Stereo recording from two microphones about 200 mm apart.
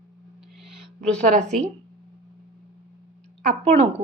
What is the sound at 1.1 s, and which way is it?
Speech, 35° right (ahead or behind).